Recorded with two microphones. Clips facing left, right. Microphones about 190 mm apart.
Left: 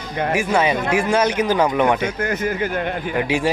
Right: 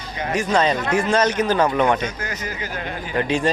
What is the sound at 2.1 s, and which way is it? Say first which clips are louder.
Speech: left 8 dB; 55° left (ahead or behind).